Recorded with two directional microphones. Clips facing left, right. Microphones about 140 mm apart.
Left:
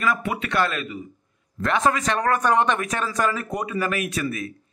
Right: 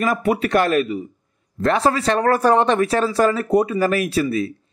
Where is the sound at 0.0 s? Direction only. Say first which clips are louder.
Right 6 dB; 40° right (ahead or behind).